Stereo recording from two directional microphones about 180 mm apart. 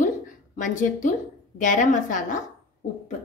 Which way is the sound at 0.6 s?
45° left (ahead or behind).